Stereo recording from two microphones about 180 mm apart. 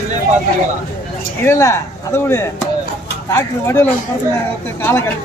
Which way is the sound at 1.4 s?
15° left (ahead or behind).